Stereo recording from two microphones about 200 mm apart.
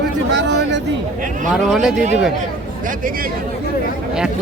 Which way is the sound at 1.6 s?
Centre (ahead or behind).